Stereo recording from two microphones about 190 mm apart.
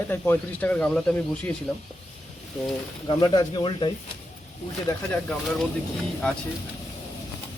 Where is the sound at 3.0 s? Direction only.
20° left (ahead or behind).